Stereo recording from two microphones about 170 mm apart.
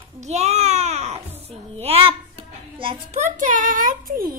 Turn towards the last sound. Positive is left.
turn(degrees=-55)  # may be behind; listen again after turning